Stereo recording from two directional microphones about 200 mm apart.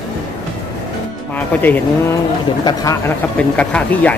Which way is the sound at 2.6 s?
20° left (ahead or behind).